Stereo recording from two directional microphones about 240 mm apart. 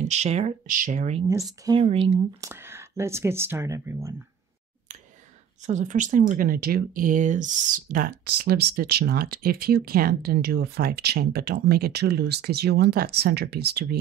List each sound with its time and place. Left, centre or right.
0.1 s speech: right
2.4 s a sound: centre
3.0 s speech: centre
5.7 s speech: right